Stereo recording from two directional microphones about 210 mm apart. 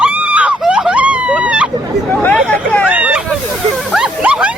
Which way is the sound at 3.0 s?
5° right (ahead or behind).